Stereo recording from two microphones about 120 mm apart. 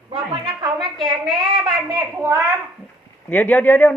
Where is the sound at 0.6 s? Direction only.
35° right (ahead or behind).